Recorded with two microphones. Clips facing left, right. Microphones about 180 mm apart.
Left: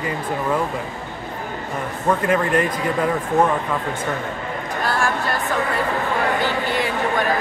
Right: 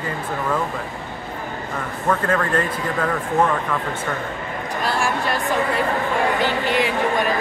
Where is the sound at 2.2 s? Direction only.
15° left (ahead or behind).